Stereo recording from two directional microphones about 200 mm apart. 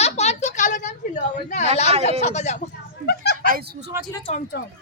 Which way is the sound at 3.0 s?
55° left (ahead or behind).